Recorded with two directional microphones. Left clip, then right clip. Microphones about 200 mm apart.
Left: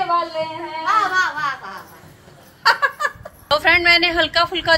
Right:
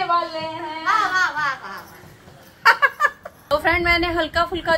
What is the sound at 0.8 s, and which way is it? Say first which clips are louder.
Speech: left 2 dB; centre (ahead or behind).